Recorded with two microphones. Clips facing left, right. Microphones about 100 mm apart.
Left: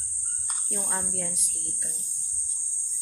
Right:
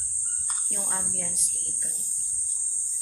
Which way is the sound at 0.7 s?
5° left (ahead or behind).